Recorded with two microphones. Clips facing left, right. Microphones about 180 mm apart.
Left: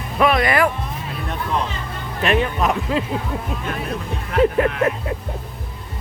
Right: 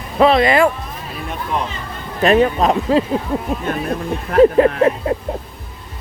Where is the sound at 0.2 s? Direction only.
25° right (ahead or behind).